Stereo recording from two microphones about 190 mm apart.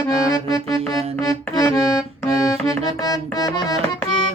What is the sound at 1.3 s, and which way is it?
Music, 20° left (ahead or behind).